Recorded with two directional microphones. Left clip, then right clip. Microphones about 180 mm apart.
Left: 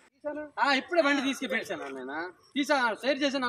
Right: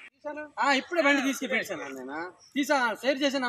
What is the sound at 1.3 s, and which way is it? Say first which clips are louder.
Speech: right 2 dB; 40° right (ahead or behind).